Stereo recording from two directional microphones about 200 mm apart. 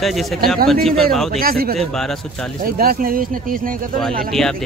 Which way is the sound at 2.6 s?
50° right (ahead or behind).